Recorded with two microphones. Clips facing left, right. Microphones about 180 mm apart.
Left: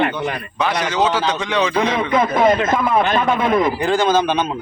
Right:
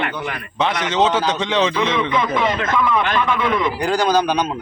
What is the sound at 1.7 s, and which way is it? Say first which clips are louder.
A man's voice: left 2 dB; 40° left (ahead or behind).